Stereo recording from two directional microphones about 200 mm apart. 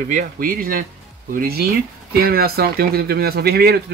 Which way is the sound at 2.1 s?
50° right (ahead or behind).